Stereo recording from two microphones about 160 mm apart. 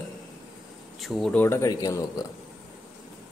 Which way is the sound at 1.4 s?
20° left (ahead or behind).